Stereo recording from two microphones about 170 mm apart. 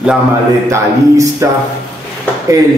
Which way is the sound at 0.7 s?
20° right (ahead or behind).